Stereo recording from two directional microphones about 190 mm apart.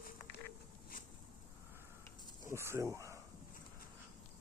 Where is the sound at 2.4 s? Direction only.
15° right (ahead or behind).